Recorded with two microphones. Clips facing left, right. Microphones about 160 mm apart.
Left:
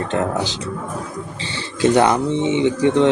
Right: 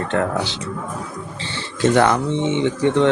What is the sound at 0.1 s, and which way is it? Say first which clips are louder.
Speech: right 1 dB; 15° left (ahead or behind).